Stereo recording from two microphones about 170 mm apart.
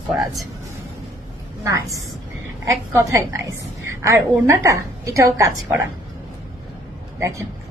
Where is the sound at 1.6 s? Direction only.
20° right (ahead or behind).